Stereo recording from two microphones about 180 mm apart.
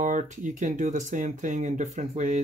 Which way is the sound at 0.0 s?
45° right (ahead or behind).